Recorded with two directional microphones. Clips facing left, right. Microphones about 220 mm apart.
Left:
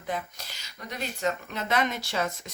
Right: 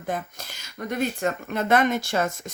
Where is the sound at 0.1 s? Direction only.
50° right (ahead or behind).